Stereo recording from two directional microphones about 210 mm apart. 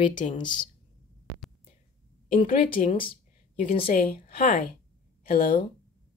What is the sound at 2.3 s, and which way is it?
Speech, 40° left (ahead or behind).